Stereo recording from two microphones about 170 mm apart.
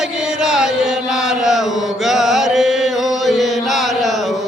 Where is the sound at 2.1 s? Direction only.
Centre (ahead or behind).